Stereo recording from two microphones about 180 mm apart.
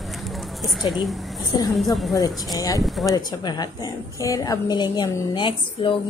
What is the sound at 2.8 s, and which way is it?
Speech, centre (ahead or behind).